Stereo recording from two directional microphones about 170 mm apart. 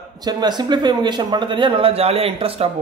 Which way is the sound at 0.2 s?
25° right (ahead or behind).